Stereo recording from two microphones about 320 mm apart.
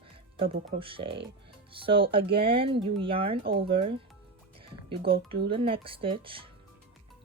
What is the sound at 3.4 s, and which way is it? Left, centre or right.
Speech, right.